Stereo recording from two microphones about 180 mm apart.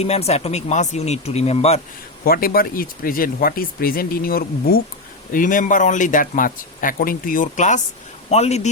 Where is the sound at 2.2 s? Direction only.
55° left (ahead or behind).